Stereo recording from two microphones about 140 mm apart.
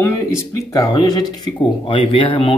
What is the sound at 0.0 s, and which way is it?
A man's voice, 20° left (ahead or behind).